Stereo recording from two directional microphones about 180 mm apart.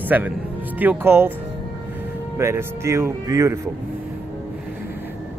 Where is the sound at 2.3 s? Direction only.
15° right (ahead or behind).